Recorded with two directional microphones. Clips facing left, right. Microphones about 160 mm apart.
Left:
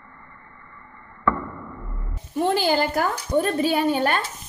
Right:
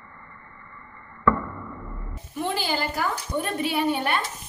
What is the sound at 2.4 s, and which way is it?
A woman's voice, 45° left (ahead or behind).